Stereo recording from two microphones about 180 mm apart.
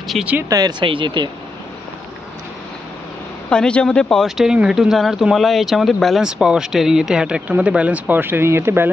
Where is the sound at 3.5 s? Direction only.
5° left (ahead or behind).